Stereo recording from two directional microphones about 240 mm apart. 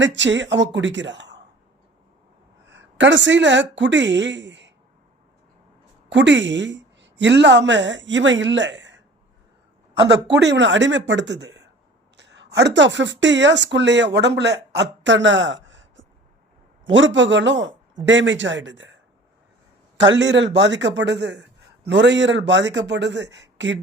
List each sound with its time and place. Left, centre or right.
0.0 s a man's voice: right
2.6 s a woman's voice: right
6.1 s a woman's voice: right
10.3 s a man's voice: right
20.1 s a man's voice: right